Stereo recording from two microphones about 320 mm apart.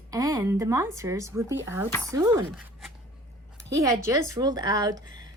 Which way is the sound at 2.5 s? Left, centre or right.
Centre.